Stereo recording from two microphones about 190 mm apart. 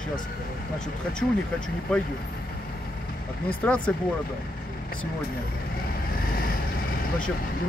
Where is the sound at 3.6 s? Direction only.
5° left (ahead or behind).